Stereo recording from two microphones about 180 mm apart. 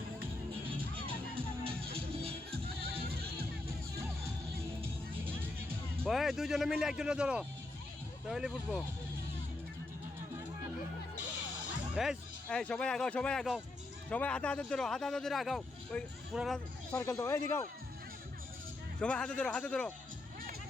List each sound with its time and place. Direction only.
0.7 s music: 30° right (ahead or behind)
2.8 s music: 60° right (ahead or behind)
4.8 s music: 10° right (ahead or behind)
6.1 s speech: centre (ahead or behind)
11.9 s speech: centre (ahead or behind)
16.9 s speech: 15° left (ahead or behind)
18.9 s speech: 5° left (ahead or behind)